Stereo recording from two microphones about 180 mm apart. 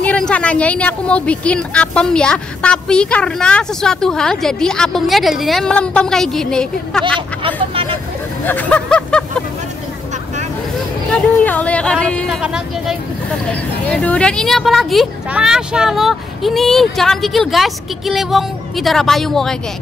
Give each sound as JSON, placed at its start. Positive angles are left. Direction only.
{"t": 0.0, "sound": "speech", "side_deg": 5}
{"t": 7.7, "sound": "vehicle", "side_deg": -30}
{"t": 8.5, "sound": "speech", "side_deg": 10}
{"t": 11.1, "sound": "speech", "side_deg": 10}
{"t": 13.5, "sound": "speech", "side_deg": 5}